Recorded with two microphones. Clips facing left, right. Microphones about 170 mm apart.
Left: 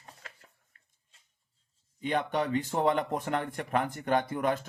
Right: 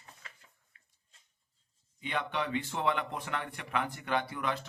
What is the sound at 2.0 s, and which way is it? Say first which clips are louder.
Speech: left 5 dB; 45° left (ahead or behind).